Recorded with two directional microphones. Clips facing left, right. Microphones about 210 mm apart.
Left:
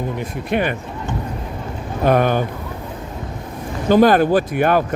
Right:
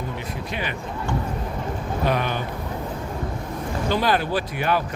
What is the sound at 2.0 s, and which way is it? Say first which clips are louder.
Speech: left 9 dB; 50° left (ahead or behind).